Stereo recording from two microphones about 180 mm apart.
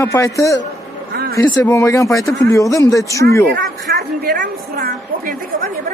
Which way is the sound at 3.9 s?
65° right (ahead or behind).